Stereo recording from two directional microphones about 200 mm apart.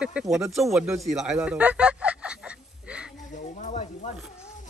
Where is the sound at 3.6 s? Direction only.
40° left (ahead or behind).